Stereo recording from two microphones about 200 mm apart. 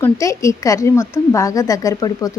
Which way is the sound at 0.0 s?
15° left (ahead or behind).